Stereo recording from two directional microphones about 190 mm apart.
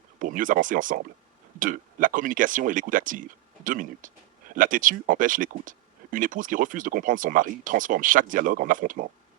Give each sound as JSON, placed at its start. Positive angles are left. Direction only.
{"t": 0.2, "sound": "speech", "side_deg": -45}